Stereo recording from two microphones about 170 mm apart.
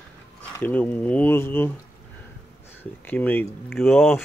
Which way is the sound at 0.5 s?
10° left (ahead or behind).